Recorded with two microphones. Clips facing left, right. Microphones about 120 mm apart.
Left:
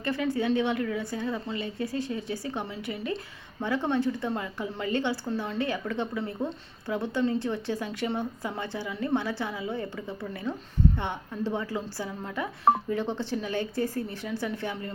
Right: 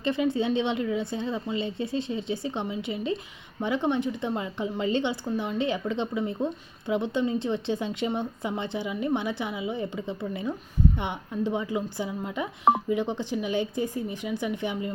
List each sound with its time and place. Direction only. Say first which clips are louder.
0.0 s a woman's voice: right 2 dB; 20° right (ahead or behind)